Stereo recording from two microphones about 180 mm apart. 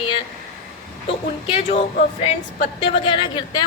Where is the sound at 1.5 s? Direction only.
35° left (ahead or behind).